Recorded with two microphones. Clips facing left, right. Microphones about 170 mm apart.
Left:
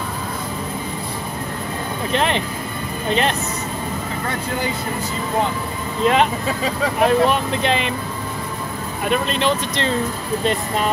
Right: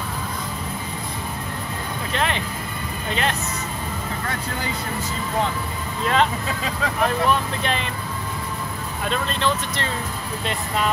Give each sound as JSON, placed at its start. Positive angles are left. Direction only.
{"t": 2.1, "sound": "speech", "side_deg": 20}
{"t": 6.0, "sound": "speech", "side_deg": 20}
{"t": 9.0, "sound": "speech", "side_deg": 15}